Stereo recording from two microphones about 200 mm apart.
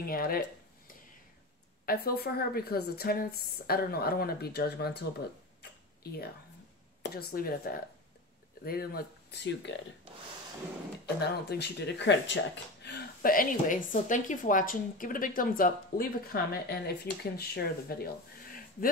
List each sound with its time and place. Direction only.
0.0 s speech: 45° left (ahead or behind)
1.9 s speech: 50° left (ahead or behind)
7.0 s speech: 50° left (ahead or behind)
11.1 s speech: 55° left (ahead or behind)
12.8 s speech: 50° left (ahead or behind)